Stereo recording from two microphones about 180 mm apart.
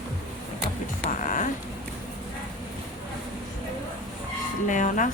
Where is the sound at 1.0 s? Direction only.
45° left (ahead or behind).